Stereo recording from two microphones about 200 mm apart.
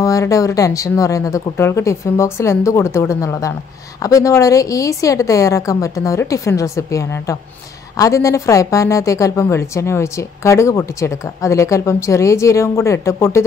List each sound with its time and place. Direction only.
0.0 s a woman's voice: 15° left (ahead or behind)